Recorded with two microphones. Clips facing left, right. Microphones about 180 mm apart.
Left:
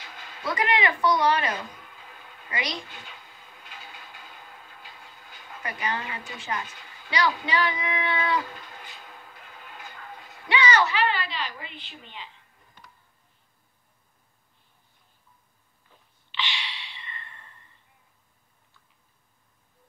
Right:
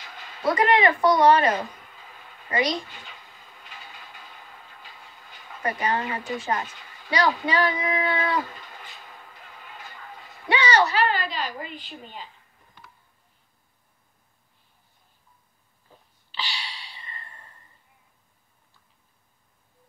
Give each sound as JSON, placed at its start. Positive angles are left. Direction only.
{"t": 0.4, "sound": "a woman's voice", "side_deg": -45}
{"t": 5.6, "sound": "a woman's voice", "side_deg": -40}
{"t": 10.5, "sound": "a woman's voice", "side_deg": -35}
{"t": 16.3, "sound": "a sound", "side_deg": -40}